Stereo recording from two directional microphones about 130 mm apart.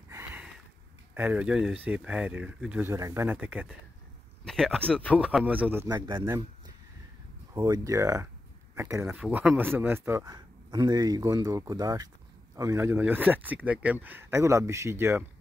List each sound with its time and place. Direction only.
1.1 s speech: 15° right (ahead or behind)
2.9 s speech: 25° right (ahead or behind)
3.3 s speech: 10° right (ahead or behind)
4.5 s speech: 5° left (ahead or behind)
5.4 s speech: 15° right (ahead or behind)
7.5 s speech: 30° right (ahead or behind)
9.0 s speech: 10° right (ahead or behind)
10.3 s speech: 35° right (ahead or behind)